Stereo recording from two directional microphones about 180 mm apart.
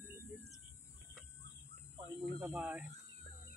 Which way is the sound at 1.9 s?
25° right (ahead or behind).